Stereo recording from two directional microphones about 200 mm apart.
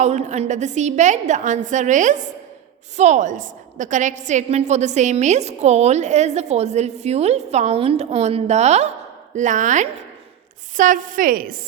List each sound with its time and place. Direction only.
0.0 s a woman's voice: 35° right (ahead or behind)